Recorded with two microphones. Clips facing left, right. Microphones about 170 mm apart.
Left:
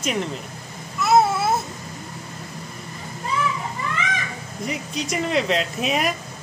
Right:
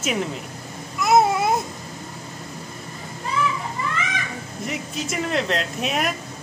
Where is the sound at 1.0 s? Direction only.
15° right (ahead or behind).